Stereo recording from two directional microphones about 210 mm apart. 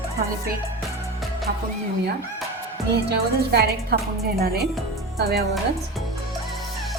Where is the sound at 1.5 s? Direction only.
50° right (ahead or behind).